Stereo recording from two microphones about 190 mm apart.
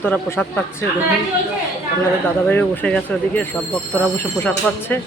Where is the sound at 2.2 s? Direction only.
10° left (ahead or behind).